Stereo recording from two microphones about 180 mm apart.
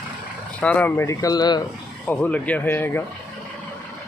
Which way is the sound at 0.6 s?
10° left (ahead or behind).